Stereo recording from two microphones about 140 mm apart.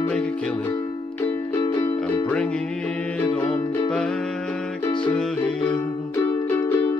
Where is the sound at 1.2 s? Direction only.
25° left (ahead or behind).